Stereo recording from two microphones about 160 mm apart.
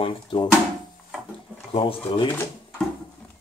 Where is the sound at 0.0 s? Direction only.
30° left (ahead or behind).